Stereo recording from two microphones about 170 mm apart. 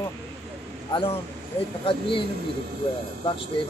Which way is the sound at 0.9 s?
30° left (ahead or behind).